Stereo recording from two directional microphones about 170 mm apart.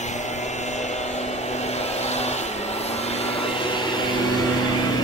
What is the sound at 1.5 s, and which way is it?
Vehicle, 40° left (ahead or behind).